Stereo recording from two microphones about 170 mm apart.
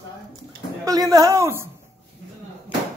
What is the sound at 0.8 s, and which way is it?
Speech, 20° right (ahead or behind).